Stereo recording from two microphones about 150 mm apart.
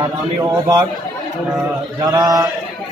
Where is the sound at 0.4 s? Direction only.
25° right (ahead or behind).